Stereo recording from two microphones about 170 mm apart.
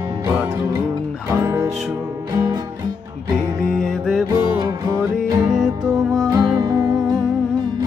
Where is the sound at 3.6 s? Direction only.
5° left (ahead or behind).